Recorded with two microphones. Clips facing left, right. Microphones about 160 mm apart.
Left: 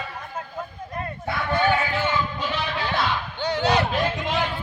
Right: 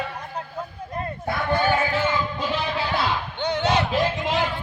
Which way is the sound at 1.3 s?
45° right (ahead or behind).